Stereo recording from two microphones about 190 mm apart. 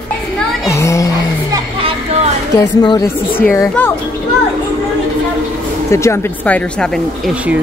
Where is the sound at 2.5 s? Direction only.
25° left (ahead or behind).